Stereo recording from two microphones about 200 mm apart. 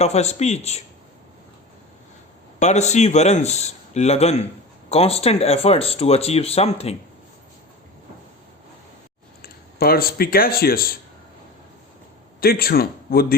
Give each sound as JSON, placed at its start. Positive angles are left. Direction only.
{"t": 0.0, "sound": "speech", "side_deg": 35}
{"t": 2.6, "sound": "speech", "side_deg": 35}
{"t": 9.4, "sound": "speech", "side_deg": 50}
{"t": 12.4, "sound": "a man's voice", "side_deg": 50}